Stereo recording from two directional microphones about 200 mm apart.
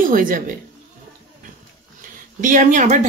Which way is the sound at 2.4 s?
40° right (ahead or behind).